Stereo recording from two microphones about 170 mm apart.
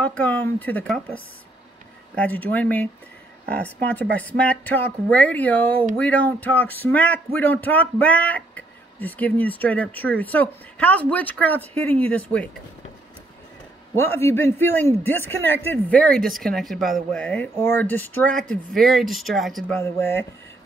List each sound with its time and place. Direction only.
0.0 s speech: 10° left (ahead or behind)
13.9 s speech: 15° left (ahead or behind)
19.8 s speech: 15° left (ahead or behind)